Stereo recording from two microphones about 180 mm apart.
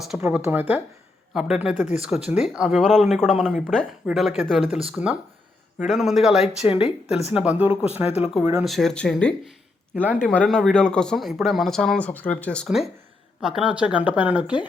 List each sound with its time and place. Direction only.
0.2 s speech: 10° right (ahead or behind)
5.8 s speech: centre (ahead or behind)
6.6 s speech: 35° left (ahead or behind)
7.3 s speech: 5° right (ahead or behind)
7.7 s speech: 30° left (ahead or behind)
8.4 s speech: 5° right (ahead or behind)
9.9 s speech: 10° right (ahead or behind)
10.2 s speech: 5° left (ahead or behind)